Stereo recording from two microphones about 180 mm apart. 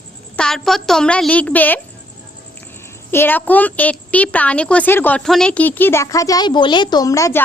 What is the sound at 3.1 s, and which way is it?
A woman's voice, 10° left (ahead or behind).